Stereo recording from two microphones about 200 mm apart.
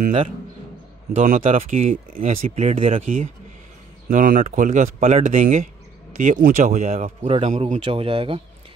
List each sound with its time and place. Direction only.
1.1 s speech: 35° right (ahead or behind)
4.1 s speech: 40° right (ahead or behind)